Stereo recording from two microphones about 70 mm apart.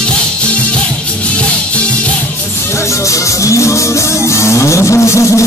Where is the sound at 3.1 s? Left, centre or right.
Left.